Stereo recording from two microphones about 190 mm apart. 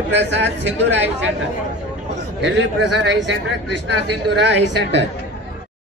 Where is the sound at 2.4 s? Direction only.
70° right (ahead or behind).